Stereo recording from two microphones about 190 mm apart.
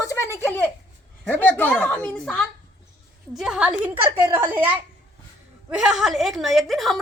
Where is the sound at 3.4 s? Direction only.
5° right (ahead or behind).